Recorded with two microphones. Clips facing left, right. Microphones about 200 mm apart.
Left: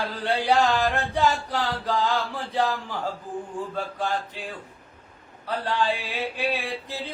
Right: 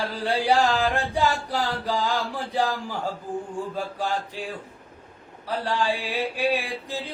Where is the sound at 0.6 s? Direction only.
10° right (ahead or behind).